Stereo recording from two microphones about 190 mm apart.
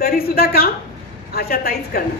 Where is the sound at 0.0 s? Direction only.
50° left (ahead or behind).